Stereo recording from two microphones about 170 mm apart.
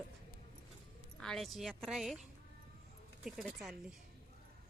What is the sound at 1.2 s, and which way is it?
Speech, centre (ahead or behind).